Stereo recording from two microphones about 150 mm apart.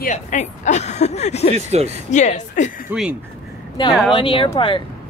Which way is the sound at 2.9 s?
10° right (ahead or behind).